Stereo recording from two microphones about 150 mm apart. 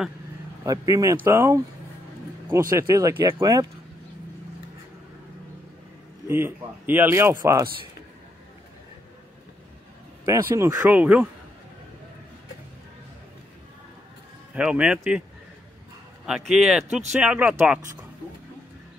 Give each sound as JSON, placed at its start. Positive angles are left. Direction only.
{"t": 0.7, "sound": "speech", "side_deg": -25}
{"t": 2.9, "sound": "speech", "side_deg": -20}
{"t": 6.2, "sound": "speech", "side_deg": -15}
{"t": 10.2, "sound": "speech", "side_deg": -20}
{"t": 10.9, "sound": "speech", "side_deg": -10}
{"t": 14.5, "sound": "speech", "side_deg": -5}
{"t": 16.3, "sound": "speech", "side_deg": -5}